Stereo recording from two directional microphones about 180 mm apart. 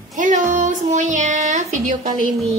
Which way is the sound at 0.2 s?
45° right (ahead or behind).